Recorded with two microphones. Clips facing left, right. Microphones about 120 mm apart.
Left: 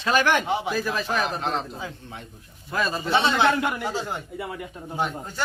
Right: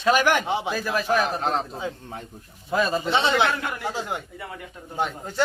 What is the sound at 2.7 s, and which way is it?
Speech, 20° right (ahead or behind).